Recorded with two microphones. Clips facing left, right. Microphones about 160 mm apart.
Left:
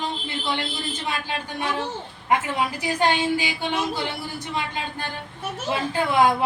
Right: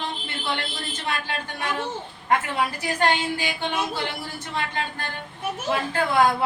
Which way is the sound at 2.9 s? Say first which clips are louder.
Left 2 dB; 10° left (ahead or behind).